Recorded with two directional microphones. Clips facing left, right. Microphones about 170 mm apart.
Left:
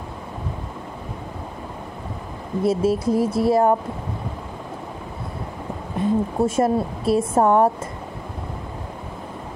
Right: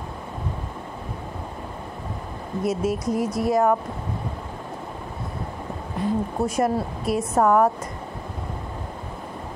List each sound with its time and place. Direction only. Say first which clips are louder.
2.6 s a woman's voice: left 5 dB; 30° left (ahead or behind)
5.9 s a woman's voice: left 4 dB; 25° left (ahead or behind)